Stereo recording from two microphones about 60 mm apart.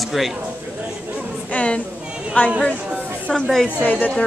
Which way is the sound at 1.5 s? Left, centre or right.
Left.